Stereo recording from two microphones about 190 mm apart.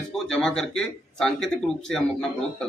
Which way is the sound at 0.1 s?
5° left (ahead or behind).